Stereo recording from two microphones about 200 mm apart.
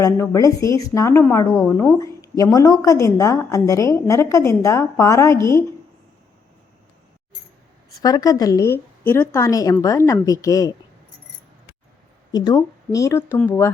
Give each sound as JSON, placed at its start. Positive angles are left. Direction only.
{"t": 0.0, "sound": "a woman's voice", "side_deg": 15}
{"t": 8.0, "sound": "a woman's voice", "side_deg": 20}
{"t": 12.9, "sound": "a woman's voice", "side_deg": 15}